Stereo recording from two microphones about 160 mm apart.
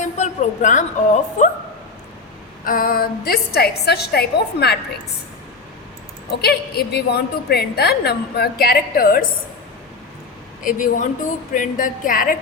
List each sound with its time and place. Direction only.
0.0 s a woman's voice: 50° left (ahead or behind)
2.6 s a woman's voice: 60° left (ahead or behind); by 4.8 s 85° left
6.4 s a woman's voice: 90° left; by 9.2 s 65° left (ahead or behind)
10.6 s a woman's voice: 55° left (ahead or behind)